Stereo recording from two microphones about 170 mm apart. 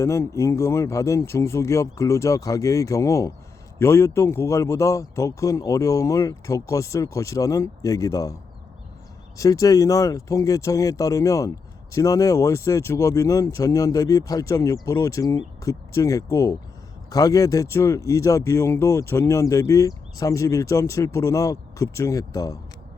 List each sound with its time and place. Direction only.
0.0 s speech: 15° left (ahead or behind)
9.4 s speech: 20° left (ahead or behind)